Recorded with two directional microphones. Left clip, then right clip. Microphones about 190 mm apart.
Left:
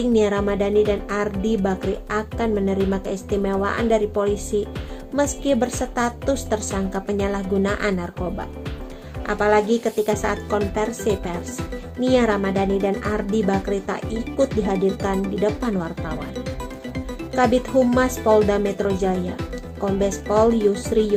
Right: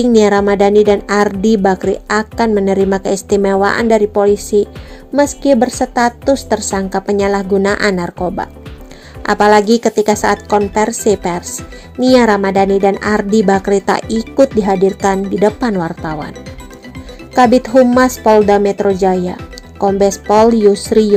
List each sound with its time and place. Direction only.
0.0 s a woman's voice: 45° right (ahead or behind)
17.3 s a woman's voice: 40° right (ahead or behind)